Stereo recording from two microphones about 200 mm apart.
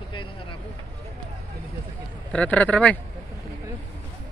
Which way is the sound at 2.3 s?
5° left (ahead or behind).